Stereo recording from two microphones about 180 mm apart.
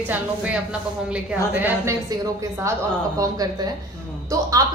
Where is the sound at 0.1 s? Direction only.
5° right (ahead or behind).